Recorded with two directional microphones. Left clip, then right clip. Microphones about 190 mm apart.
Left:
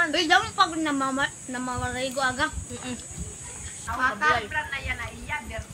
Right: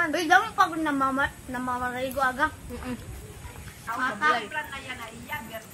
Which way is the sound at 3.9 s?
20° left (ahead or behind).